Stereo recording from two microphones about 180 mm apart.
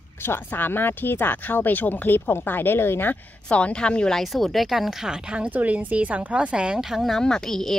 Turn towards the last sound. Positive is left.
turn(degrees=0)  # may be behind; listen again after turning